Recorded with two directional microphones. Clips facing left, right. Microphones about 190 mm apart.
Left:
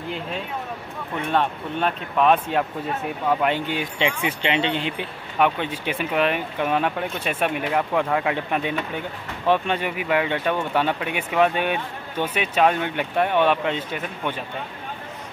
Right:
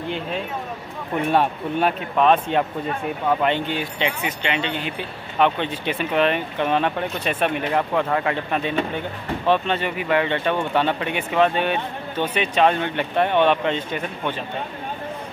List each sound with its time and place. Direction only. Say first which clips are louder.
1.3 s speech: right 2 dB; 10° right (ahead or behind)
2.2 s speech: right 1 dB; 5° left (ahead or behind)
4.3 s speech: left 2 dB; 30° left (ahead or behind)
5.4 s speech: right 1 dB; 10° left (ahead or behind)